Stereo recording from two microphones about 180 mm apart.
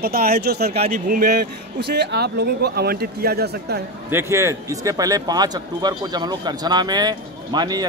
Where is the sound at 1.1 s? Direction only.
55° right (ahead or behind).